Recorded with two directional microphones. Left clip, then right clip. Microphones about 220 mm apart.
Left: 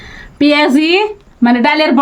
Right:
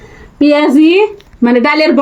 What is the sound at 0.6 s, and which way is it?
Speech, 50° left (ahead or behind).